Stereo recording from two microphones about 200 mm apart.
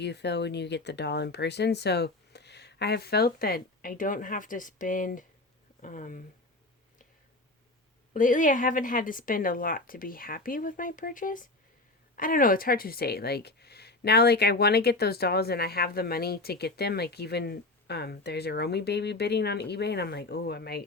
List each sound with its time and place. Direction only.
0.0 s speech: 55° left (ahead or behind); by 6.2 s 40° left (ahead or behind)
8.1 s speech: 40° left (ahead or behind)